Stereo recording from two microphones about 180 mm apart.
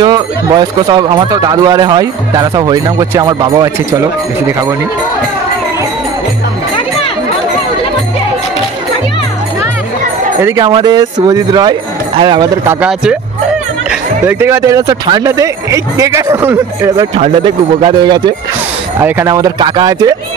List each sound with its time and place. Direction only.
0.0 s speech: 25° right (ahead or behind)
10.4 s speech: 20° right (ahead or behind)
12.6 s speech: 5° right (ahead or behind)
16.9 s speech: 30° right (ahead or behind)
18.9 s speech: 15° right (ahead or behind)